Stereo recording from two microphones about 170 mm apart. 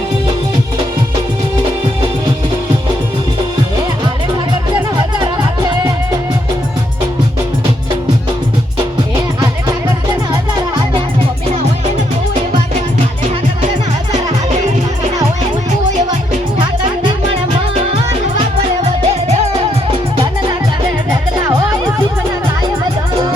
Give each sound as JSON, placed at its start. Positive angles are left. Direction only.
{"t": 4.9, "sound": "music", "side_deg": -25}
{"t": 18.8, "sound": "music", "side_deg": -40}
{"t": 21.3, "sound": "music", "side_deg": -20}